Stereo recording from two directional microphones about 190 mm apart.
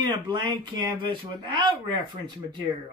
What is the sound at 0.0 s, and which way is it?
Speech, 25° right (ahead or behind).